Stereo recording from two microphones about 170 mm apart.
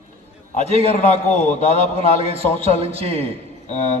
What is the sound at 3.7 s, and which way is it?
Speech, 40° left (ahead or behind).